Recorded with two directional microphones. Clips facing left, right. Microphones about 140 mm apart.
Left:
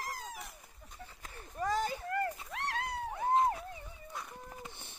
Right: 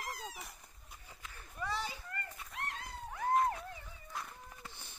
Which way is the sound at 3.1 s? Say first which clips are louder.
Left 2 dB; 25° left (ahead or behind).